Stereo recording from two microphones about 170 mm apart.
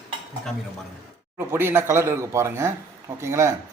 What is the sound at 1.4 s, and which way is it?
Speech, 15° right (ahead or behind).